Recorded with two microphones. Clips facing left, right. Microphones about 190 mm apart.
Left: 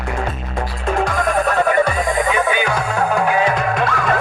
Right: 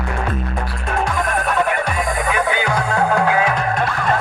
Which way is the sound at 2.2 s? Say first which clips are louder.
Left 2 dB; 20° left (ahead or behind).